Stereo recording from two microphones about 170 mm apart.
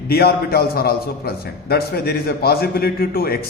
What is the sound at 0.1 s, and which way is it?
A man's voice, 65° left (ahead or behind).